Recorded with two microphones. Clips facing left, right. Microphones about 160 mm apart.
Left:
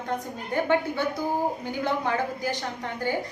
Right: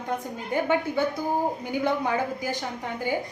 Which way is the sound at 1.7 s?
10° right (ahead or behind).